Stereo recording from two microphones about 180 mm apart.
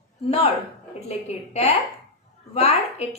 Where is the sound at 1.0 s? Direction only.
35° left (ahead or behind).